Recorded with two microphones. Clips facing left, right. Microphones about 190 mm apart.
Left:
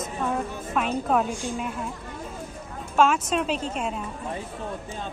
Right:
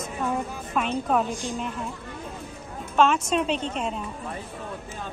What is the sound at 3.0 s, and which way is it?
A woman's voice, 5° left (ahead or behind).